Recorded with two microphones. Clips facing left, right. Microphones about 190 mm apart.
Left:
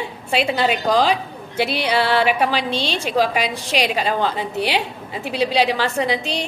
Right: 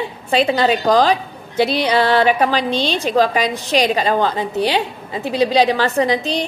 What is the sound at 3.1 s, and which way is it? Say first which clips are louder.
A woman's voice: right 2 dB; 5° left (ahead or behind).